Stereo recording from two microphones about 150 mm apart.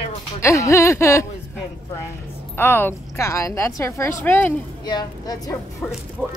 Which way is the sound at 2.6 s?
15° left (ahead or behind).